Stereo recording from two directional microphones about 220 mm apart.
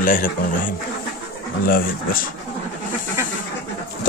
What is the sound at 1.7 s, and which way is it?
Speech, 40° left (ahead or behind).